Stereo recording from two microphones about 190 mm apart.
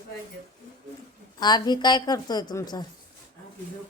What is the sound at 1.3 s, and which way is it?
A woman's voice, 20° left (ahead or behind).